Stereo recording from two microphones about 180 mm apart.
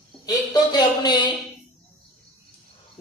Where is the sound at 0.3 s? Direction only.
25° left (ahead or behind).